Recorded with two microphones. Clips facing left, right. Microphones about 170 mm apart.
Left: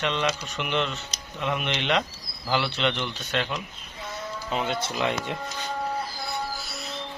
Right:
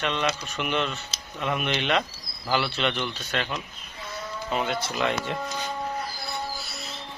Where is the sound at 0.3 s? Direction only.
20° left (ahead or behind).